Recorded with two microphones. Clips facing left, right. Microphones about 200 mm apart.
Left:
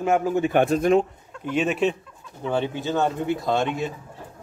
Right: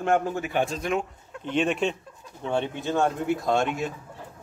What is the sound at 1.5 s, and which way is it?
Speech, 5° left (ahead or behind).